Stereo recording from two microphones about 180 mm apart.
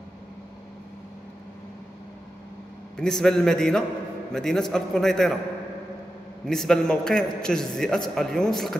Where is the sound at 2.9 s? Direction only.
5° left (ahead or behind).